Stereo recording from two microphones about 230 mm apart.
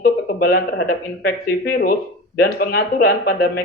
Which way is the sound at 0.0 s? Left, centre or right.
Left.